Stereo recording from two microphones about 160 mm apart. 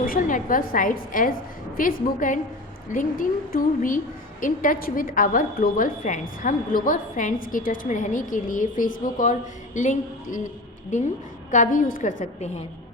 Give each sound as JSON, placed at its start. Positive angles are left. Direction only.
{"t": 0.0, "sound": "a woman's voice", "side_deg": 60}